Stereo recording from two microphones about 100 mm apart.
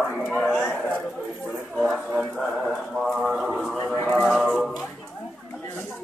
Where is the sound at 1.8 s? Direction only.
5° right (ahead or behind).